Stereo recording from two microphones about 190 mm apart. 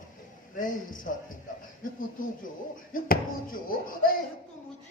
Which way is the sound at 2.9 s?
50° left (ahead or behind).